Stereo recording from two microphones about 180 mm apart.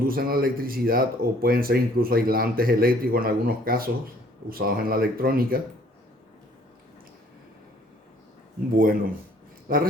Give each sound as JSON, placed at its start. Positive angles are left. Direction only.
{"t": 0.0, "sound": "speech", "side_deg": -55}
{"t": 8.7, "sound": "speech", "side_deg": -55}